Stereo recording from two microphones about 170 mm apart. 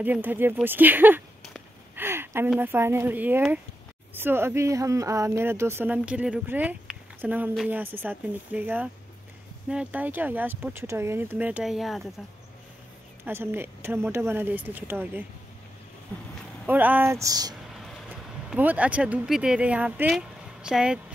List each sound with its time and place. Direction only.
0.0 s speech: 10° right (ahead or behind)
2.0 s a sound: 15° right (ahead or behind)
2.5 s speech: 10° right (ahead or behind)
13.2 s speech: 15° right (ahead or behind)
16.6 s speech: 10° right (ahead or behind)
17.7 s speech: centre (ahead or behind)